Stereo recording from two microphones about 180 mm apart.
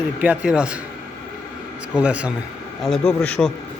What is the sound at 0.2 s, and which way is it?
Speech, 5° right (ahead or behind).